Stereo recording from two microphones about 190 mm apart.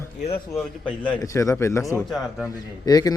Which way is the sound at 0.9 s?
25° left (ahead or behind).